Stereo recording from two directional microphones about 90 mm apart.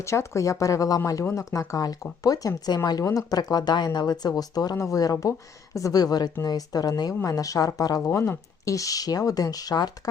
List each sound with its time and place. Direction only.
0.0 s speech: 30° left (ahead or behind); by 3.0 s 50° left (ahead or behind)
3.0 s speech: 40° left (ahead or behind)
8.1 s speech: 30° left (ahead or behind)